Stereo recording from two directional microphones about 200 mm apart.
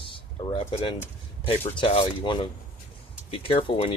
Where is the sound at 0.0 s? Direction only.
25° left (ahead or behind).